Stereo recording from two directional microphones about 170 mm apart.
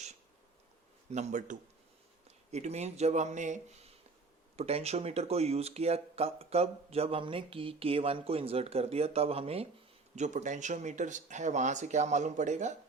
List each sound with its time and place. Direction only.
1.1 s speech: 45° right (ahead or behind)